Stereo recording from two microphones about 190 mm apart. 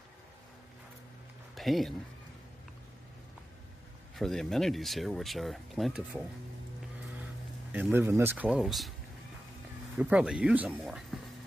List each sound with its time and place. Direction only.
1.5 s speech: centre (ahead or behind)
4.2 s speech: centre (ahead or behind)
7.7 s speech: 10° right (ahead or behind)
9.9 s speech: 5° right (ahead or behind)